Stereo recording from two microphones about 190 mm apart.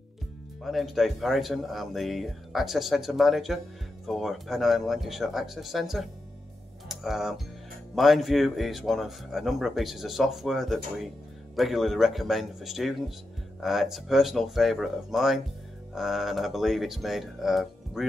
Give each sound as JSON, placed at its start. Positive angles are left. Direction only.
{"t": 0.7, "sound": "a man's voice", "side_deg": 0}